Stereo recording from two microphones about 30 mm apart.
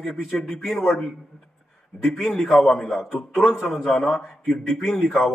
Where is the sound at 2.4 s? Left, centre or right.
Centre.